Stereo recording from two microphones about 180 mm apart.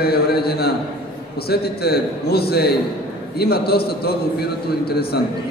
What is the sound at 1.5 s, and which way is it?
A man's voice, 60° left (ahead or behind).